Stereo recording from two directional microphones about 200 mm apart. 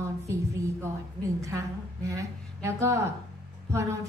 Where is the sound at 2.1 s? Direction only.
15° right (ahead or behind).